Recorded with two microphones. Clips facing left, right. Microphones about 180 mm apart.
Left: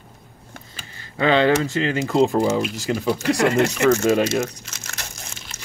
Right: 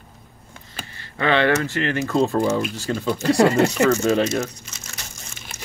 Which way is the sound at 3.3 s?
30° right (ahead or behind).